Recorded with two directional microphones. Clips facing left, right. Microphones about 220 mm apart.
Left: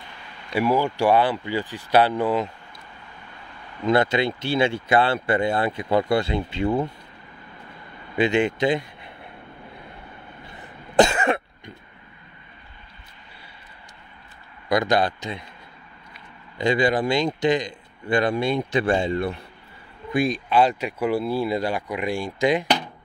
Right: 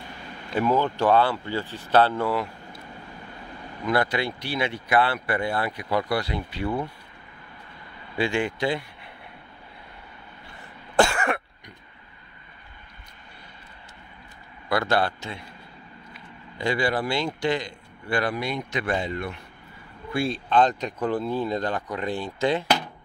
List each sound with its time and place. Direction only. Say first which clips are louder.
0.6 s speech: left 2 dB; 10° left (ahead or behind)
3.8 s speech: left 4 dB; 25° left (ahead or behind)
8.2 s speech: left 5 dB; 20° left (ahead or behind)
11.0 s cough: left 4 dB; 20° left (ahead or behind)
14.7 s speech: left 3 dB; 15° left (ahead or behind)
16.5 s speech: left 4 dB; 20° left (ahead or behind)
20.1 s speech: left 3 dB; 15° left (ahead or behind)